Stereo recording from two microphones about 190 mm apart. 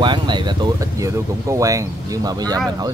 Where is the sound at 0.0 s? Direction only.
25° right (ahead or behind).